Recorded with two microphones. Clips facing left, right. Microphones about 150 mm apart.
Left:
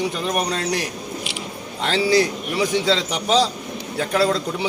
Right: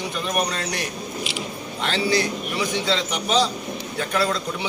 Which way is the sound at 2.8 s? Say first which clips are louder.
Left 3 dB; 35° left (ahead or behind).